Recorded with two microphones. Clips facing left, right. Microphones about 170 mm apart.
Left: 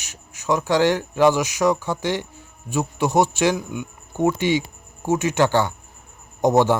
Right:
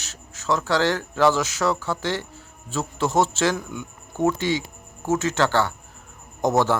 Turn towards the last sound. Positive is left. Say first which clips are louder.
# left 4 dB
turn(degrees=15)  # may be behind; listen again after turning